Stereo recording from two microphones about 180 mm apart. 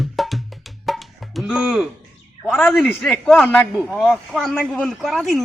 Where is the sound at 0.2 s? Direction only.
Centre (ahead or behind).